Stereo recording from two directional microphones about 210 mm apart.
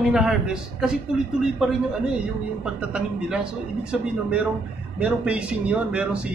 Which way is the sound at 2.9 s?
5° right (ahead or behind).